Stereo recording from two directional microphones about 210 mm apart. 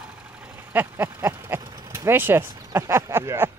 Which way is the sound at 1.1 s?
15° right (ahead or behind).